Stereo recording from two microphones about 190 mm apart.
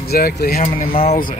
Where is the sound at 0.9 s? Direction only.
30° left (ahead or behind).